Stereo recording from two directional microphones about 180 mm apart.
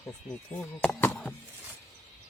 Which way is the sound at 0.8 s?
10° left (ahead or behind).